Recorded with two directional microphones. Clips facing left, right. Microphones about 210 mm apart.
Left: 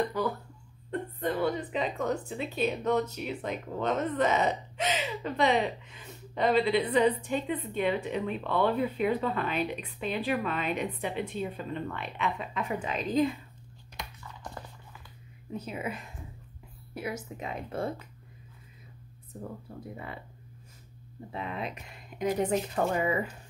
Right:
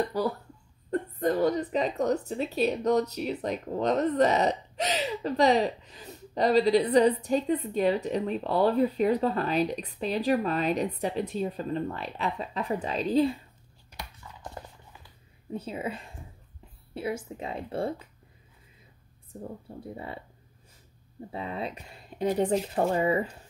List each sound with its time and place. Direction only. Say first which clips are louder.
0.2 s speech: right 2 dB; 35° right (ahead or behind)
14.4 s music: right 2 dB; 25° right (ahead or behind)
15.5 s speech: right 2 dB; 30° right (ahead or behind)
19.7 s speech: right 2 dB; 25° right (ahead or behind)
21.3 s speech: right 2 dB; 30° right (ahead or behind)